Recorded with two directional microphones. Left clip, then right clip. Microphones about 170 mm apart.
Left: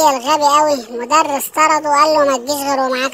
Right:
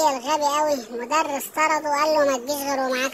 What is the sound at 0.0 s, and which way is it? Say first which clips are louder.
A child's voice: left 8 dB; 40° left (ahead or behind).